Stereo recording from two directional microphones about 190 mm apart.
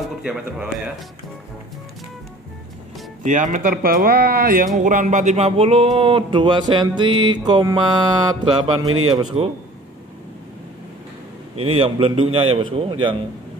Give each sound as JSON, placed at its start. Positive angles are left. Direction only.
{"t": 0.2, "sound": "speech", "side_deg": -5}
{"t": 3.3, "sound": "a man's voice", "side_deg": -40}
{"t": 11.6, "sound": "a man's voice", "side_deg": -30}